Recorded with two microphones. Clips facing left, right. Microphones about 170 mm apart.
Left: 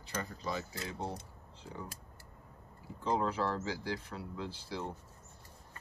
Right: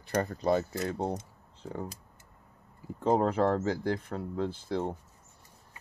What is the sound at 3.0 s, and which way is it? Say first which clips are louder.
Speech: right 7 dB; 50° right (ahead or behind).